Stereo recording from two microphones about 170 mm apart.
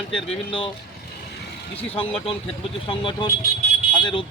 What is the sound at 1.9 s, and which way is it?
Speech, 35° left (ahead or behind).